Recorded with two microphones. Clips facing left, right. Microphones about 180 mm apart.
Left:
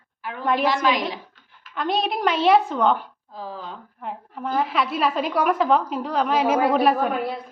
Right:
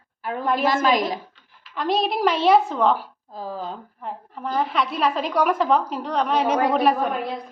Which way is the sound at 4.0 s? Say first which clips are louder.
Left 1 dB; centre (ahead or behind).